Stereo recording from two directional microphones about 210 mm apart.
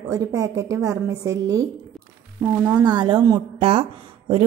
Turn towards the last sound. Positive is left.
turn(degrees=-25)  # may be behind; listen again after turning